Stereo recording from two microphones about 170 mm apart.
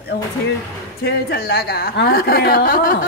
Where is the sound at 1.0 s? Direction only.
65° left (ahead or behind).